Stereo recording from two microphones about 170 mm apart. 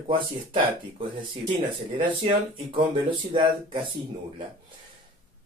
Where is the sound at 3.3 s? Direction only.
30° right (ahead or behind).